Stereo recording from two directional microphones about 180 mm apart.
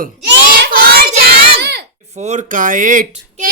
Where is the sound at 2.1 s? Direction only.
40° right (ahead or behind).